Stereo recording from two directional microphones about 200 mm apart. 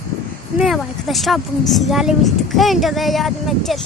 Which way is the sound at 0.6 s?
Centre (ahead or behind).